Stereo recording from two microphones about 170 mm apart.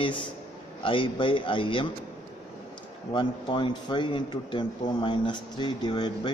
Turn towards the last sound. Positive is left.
turn(degrees=25)  # may be behind; listen again after turning